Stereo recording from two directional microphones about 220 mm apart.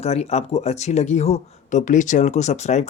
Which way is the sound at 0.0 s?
30° left (ahead or behind).